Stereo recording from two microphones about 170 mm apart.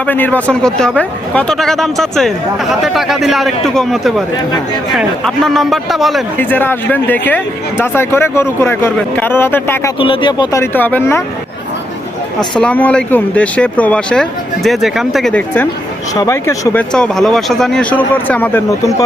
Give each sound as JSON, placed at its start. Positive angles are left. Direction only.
{"t": 0.0, "sound": "speech", "side_deg": 10}
{"t": 6.4, "sound": "speech", "side_deg": 10}
{"t": 10.0, "sound": "speech", "side_deg": 30}
{"t": 12.4, "sound": "speech", "side_deg": 5}
{"t": 16.1, "sound": "speech", "side_deg": 20}
{"t": 16.9, "sound": "speech", "side_deg": 5}